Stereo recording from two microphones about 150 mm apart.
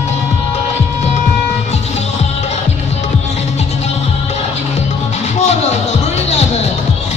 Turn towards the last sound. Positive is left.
turn(degrees=50)  # may be behind; listen again after turning